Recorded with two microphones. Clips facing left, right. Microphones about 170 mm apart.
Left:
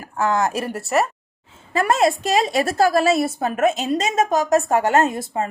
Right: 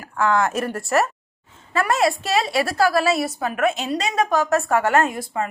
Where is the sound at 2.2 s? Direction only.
15° left (ahead or behind).